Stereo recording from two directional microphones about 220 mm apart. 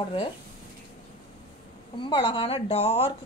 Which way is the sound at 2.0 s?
20° left (ahead or behind).